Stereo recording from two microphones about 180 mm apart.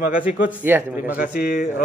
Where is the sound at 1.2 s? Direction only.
60° left (ahead or behind).